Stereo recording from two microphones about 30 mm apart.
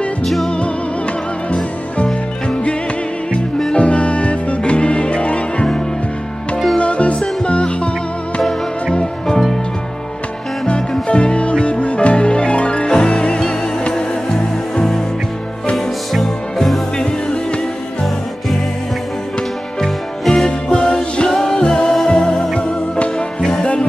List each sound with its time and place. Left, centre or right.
3.7 s music: left
6.8 s music: left
8.4 s music: centre
10.7 s music: left
13.9 s music: centre
15.7 s music: centre
17.0 s music: left
19.8 s music: centre
20.4 s music: left
23.6 s music: left